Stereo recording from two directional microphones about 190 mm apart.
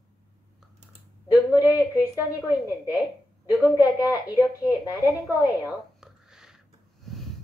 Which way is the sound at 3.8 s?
20° left (ahead or behind).